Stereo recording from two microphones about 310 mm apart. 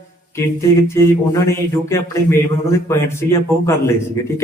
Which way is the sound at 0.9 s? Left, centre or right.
Centre.